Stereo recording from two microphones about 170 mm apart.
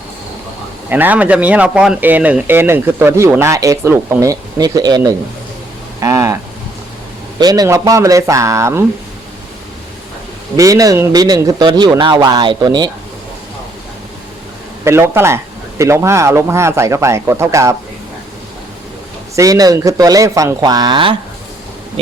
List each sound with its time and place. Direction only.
0.9 s speech: 10° right (ahead or behind)
7.3 s speech: 25° right (ahead or behind)
10.6 s speech: 20° right (ahead or behind)
14.8 s speech: 15° right (ahead or behind)
19.4 s speech: 20° right (ahead or behind)